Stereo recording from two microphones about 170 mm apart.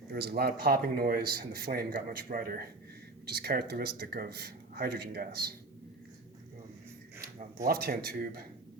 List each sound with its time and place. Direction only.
0.1 s a man's voice: 65° right (ahead or behind)
7.2 s a sound: 45° right (ahead or behind)
7.7 s a man's voice: 65° right (ahead or behind)